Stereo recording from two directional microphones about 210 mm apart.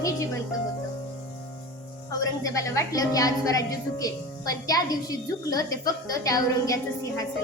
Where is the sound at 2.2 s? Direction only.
15° left (ahead or behind).